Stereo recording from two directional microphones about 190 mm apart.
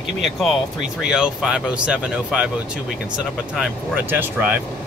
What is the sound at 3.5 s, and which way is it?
Speech, 5° right (ahead or behind).